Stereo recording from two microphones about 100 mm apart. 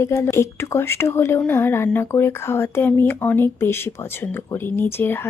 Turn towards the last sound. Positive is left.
turn(degrees=20)  # may be behind; listen again after turning